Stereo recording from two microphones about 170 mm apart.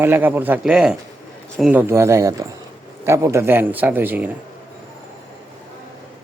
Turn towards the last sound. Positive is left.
turn(degrees=-10)  # may be behind; listen again after turning